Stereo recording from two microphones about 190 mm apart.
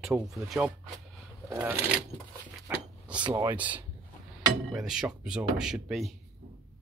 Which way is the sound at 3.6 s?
10° right (ahead or behind).